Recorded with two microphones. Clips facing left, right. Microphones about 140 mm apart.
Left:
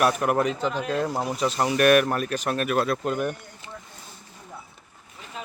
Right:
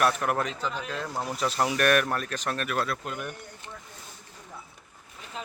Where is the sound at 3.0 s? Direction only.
45° left (ahead or behind).